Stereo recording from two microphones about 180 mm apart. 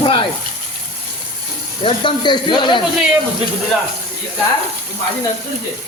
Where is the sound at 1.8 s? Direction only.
25° left (ahead or behind).